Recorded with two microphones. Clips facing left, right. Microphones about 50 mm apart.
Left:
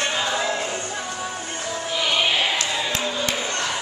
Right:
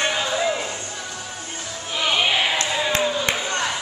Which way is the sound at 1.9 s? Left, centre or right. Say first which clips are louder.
Right 1 dB; centre.